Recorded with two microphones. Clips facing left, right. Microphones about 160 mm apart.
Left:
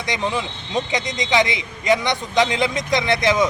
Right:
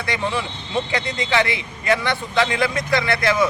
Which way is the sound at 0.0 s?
15° left (ahead or behind).